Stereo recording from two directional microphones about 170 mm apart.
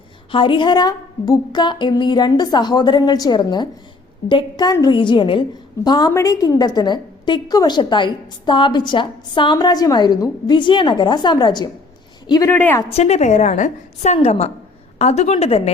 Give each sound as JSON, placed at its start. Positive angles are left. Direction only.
{"t": 0.3, "sound": "a woman's voice", "side_deg": 30}
{"t": 12.9, "sound": "a woman's voice", "side_deg": 40}